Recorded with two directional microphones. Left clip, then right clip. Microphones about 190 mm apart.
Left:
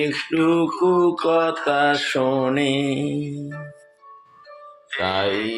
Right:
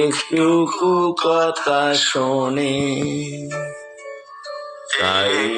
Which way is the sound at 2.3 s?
15° left (ahead or behind).